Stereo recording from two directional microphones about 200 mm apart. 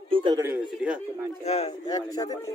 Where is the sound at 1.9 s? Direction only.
20° left (ahead or behind).